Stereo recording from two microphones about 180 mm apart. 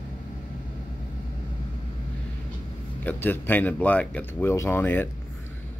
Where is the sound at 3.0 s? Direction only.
10° left (ahead or behind).